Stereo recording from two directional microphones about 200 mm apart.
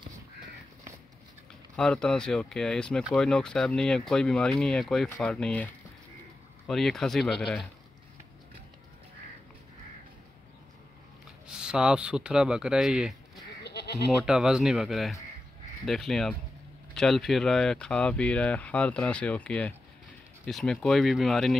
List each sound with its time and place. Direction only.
1.8 s speech: 5° left (ahead or behind)
6.7 s speech: centre (ahead or behind)
11.4 s speech: 5° right (ahead or behind)
13.7 s bleat: 55° left (ahead or behind)
14.2 s speech: 5° right (ahead or behind)